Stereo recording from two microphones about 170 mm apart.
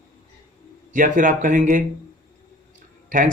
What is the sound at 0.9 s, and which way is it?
Speech, 50° right (ahead or behind).